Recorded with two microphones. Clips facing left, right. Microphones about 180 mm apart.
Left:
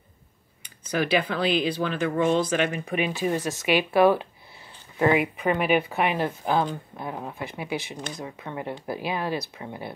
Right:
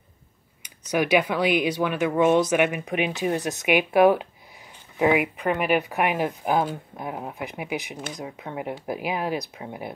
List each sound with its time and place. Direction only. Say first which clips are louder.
1.1 s speech: right 3 dB; 15° right (ahead or behind)
4.9 s speech: right 1 dB; 5° right (ahead or behind)